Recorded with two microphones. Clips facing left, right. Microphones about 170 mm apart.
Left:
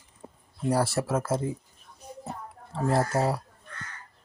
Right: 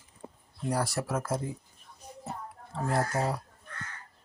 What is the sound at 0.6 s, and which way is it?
Speech, 30° left (ahead or behind).